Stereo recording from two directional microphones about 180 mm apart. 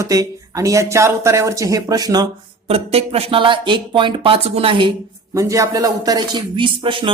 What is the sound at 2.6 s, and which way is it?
Speech, 35° right (ahead or behind).